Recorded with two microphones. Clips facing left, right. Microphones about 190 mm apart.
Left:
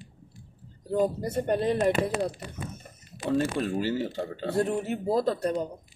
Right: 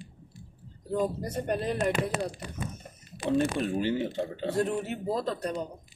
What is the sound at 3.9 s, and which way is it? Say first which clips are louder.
Speech: even; 20° right (ahead or behind).